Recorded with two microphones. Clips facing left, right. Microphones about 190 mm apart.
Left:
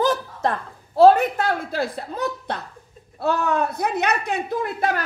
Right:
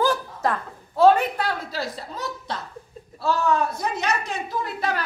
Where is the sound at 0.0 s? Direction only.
25° left (ahead or behind); by 2.6 s 55° left (ahead or behind).